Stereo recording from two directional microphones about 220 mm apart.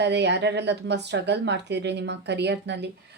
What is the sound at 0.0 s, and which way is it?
Speech, 50° right (ahead or behind).